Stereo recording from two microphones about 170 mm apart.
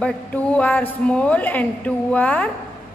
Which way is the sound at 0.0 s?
5° left (ahead or behind).